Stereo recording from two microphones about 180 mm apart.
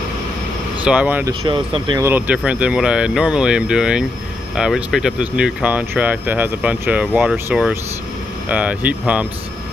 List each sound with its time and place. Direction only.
0.8 s speech: 10° right (ahead or behind)
1.4 s speech: 30° right (ahead or behind)
2.0 s speech: 10° right (ahead or behind)